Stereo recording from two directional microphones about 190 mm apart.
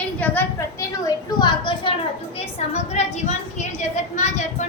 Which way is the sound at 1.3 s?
25° left (ahead or behind).